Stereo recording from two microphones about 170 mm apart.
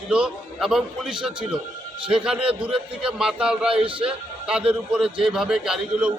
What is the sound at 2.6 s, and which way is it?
Speech, 30° right (ahead or behind).